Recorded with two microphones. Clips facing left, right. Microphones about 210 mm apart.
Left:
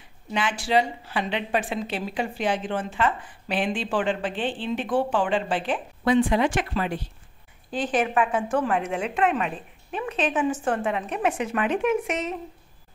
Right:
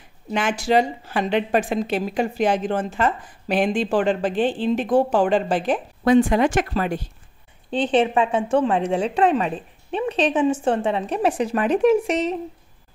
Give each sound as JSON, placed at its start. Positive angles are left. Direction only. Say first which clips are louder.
{"t": 0.3, "sound": "speech", "louder": "right 4 dB", "side_deg": -45}
{"t": 7.7, "sound": "a woman's voice", "louder": "right 5 dB", "side_deg": -30}